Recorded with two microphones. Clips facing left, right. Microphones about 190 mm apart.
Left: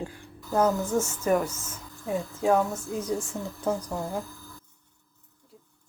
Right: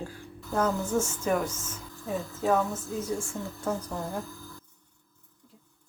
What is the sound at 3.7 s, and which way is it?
Speech, 15° left (ahead or behind).